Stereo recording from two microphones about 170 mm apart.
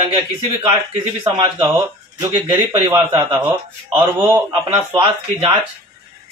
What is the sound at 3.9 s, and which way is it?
Speech, 15° right (ahead or behind).